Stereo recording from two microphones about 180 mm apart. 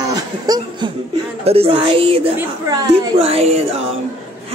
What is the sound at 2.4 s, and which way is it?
Speech, 20° right (ahead or behind).